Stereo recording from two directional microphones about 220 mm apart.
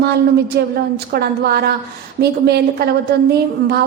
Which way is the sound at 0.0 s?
45° right (ahead or behind).